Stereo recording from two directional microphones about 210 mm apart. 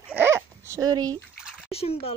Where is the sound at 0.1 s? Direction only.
10° right (ahead or behind).